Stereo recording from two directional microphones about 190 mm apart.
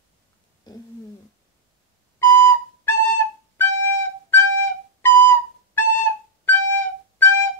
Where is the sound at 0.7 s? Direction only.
20° left (ahead or behind).